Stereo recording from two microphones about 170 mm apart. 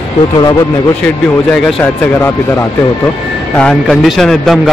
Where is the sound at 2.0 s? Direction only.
15° left (ahead or behind).